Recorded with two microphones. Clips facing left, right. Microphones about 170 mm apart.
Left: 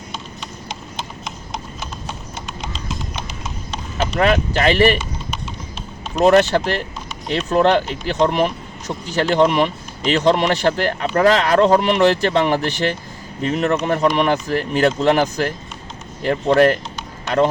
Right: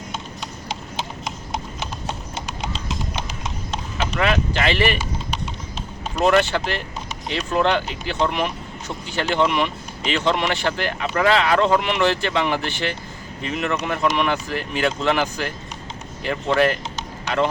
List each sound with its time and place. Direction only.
3.9 s speech: 40° left (ahead or behind)
6.1 s speech: 40° left (ahead or behind)